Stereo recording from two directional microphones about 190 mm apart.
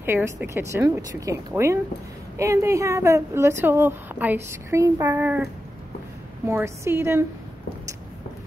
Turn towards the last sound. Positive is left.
turn(degrees=-15)  # may be behind; listen again after turning